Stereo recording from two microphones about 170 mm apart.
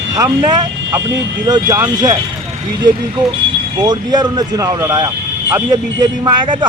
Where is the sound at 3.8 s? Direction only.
25° right (ahead or behind).